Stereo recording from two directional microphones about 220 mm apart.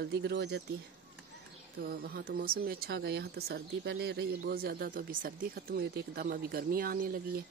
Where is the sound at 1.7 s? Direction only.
45° right (ahead or behind).